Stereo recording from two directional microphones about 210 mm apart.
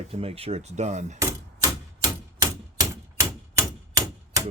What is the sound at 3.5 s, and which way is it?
Typewriter, 15° right (ahead or behind).